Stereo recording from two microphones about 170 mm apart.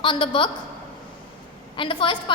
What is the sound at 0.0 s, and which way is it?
Speech, 30° left (ahead or behind).